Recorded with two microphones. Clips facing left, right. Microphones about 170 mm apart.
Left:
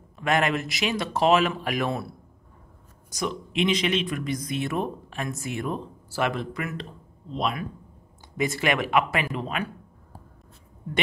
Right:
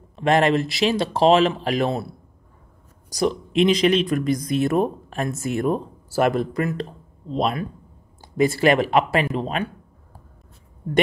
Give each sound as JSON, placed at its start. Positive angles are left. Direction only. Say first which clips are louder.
{"t": 0.1, "sound": "speech", "louder": "right 6 dB", "side_deg": -30}
{"t": 3.1, "sound": "speech", "louder": "right 8 dB", "side_deg": -35}
{"t": 10.8, "sound": "speech", "louder": "right 9 dB", "side_deg": -40}